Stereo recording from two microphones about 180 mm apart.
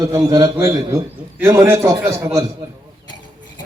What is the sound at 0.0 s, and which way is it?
A man's voice, 20° right (ahead or behind).